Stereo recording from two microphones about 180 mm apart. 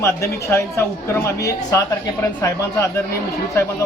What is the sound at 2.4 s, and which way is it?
Speech, 15° left (ahead or behind).